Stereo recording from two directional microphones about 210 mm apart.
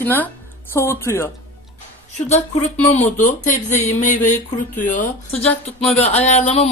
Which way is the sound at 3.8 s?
35° left (ahead or behind).